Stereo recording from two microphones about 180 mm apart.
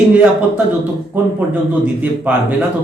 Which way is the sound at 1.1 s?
10° right (ahead or behind).